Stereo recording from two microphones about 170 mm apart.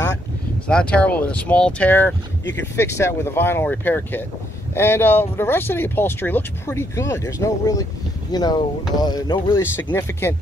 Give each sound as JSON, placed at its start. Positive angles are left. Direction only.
{"t": 0.7, "sound": "speech", "side_deg": 5}